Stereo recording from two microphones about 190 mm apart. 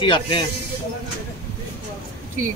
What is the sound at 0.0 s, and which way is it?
Speech, 25° left (ahead or behind).